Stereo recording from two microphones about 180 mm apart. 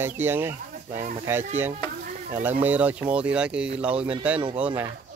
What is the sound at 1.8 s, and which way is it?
Stir, 25° left (ahead or behind).